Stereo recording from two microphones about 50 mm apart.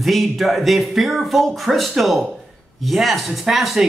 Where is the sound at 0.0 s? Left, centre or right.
Centre.